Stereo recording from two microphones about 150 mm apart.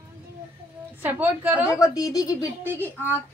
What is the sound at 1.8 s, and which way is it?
Speech, 25° left (ahead or behind).